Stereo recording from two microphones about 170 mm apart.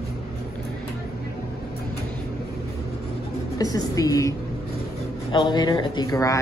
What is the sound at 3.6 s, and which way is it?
A woman's voice, 20° left (ahead or behind).